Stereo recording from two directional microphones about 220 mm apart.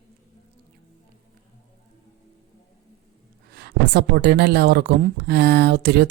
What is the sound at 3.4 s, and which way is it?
Speech, 50° right (ahead or behind).